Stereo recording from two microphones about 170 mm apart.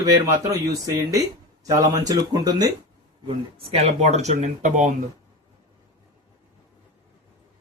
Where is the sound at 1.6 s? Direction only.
20° right (ahead or behind).